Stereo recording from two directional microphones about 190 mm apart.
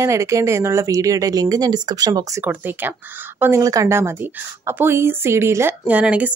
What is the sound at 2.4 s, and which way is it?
A woman's voice, 10° right (ahead or behind).